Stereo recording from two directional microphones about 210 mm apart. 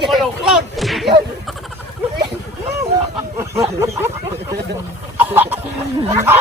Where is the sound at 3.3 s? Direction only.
15° right (ahead or behind).